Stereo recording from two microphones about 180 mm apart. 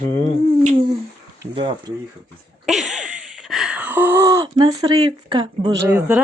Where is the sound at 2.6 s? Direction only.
Centre (ahead or behind); by 5.7 s 25° right (ahead or behind).